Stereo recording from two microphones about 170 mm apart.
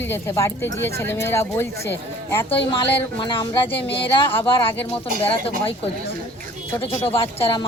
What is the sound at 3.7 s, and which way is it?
Speech, 30° left (ahead or behind).